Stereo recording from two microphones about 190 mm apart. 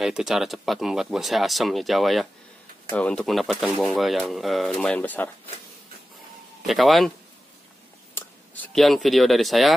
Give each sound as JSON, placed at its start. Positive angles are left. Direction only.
{"t": 0.0, "sound": "speech", "side_deg": -5}
{"t": 6.6, "sound": "speech", "side_deg": 0}
{"t": 8.1, "sound": "speech", "side_deg": 10}